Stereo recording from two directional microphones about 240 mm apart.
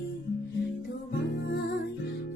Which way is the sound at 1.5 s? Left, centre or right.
Left.